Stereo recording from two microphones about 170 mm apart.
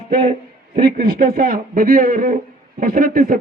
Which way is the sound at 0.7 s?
60° right (ahead or behind).